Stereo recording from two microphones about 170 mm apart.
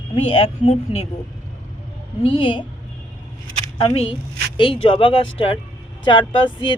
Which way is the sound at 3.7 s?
35° left (ahead or behind).